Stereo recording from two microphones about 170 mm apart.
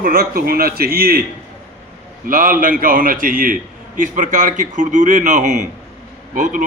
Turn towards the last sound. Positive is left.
turn(degrees=-50)  # may be behind; listen again after turning